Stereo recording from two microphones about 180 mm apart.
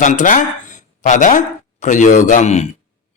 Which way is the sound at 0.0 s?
45° left (ahead or behind).